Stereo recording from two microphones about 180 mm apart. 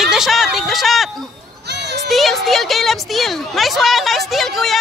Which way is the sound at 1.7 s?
70° right (ahead or behind).